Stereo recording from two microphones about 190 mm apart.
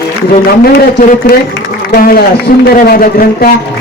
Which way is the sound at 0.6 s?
50° left (ahead or behind).